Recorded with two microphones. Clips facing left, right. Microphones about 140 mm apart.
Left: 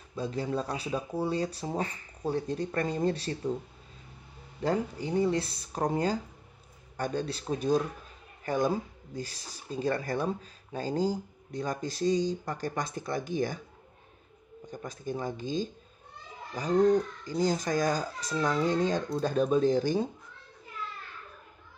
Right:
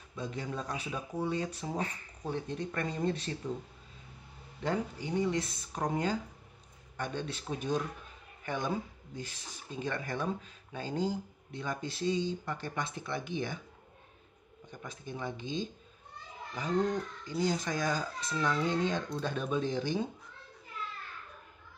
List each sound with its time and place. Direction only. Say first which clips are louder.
0.1 s speech: left 6 dB; 35° left (ahead or behind)
4.6 s speech: left 4 dB; 35° left (ahead or behind)
14.7 s speech: left 7 dB; 40° left (ahead or behind)